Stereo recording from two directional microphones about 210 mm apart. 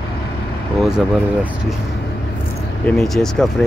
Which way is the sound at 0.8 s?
Centre (ahead or behind).